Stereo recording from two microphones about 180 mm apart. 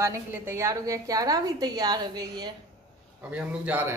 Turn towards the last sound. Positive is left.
turn(degrees=-10)  # may be behind; listen again after turning